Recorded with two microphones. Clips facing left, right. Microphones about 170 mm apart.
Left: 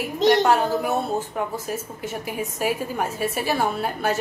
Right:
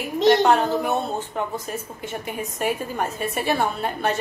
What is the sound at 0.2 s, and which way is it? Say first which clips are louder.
A woman's voice: right 1 dB; centre (ahead or behind).